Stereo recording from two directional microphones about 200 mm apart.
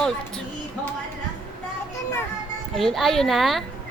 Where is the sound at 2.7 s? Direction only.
Centre (ahead or behind).